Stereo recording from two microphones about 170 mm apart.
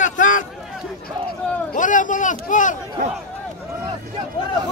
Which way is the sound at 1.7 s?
50° left (ahead or behind).